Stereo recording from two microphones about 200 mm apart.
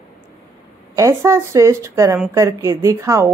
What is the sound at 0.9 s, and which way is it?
A woman's voice, 15° right (ahead or behind).